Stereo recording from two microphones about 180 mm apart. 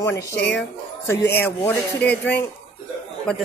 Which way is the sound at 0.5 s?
10° left (ahead or behind).